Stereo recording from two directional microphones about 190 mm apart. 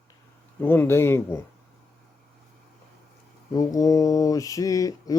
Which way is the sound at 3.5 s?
20° left (ahead or behind).